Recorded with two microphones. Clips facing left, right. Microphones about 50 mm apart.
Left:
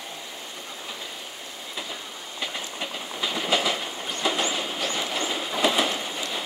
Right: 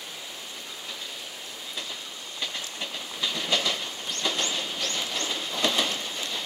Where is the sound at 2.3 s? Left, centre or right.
Centre.